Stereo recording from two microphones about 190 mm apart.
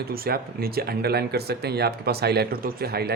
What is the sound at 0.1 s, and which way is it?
Speech, 55° right (ahead or behind).